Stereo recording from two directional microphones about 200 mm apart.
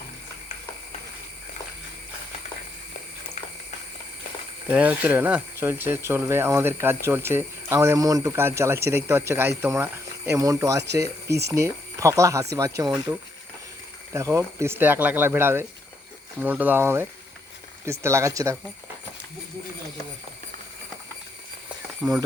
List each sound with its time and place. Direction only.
4.7 s speech: 5° right (ahead or behind)
14.1 s speech: 15° right (ahead or behind)
22.0 s speech: 5° right (ahead or behind)